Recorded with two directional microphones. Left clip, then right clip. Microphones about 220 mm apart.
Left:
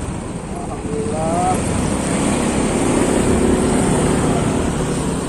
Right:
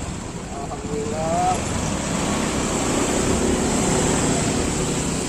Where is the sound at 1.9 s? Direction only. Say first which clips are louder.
Left 5 dB; 45° left (ahead or behind).